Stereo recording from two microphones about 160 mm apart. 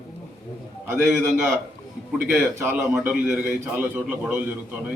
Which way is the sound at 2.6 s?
15° right (ahead or behind).